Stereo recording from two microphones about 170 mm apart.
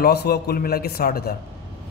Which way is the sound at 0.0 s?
70° left (ahead or behind).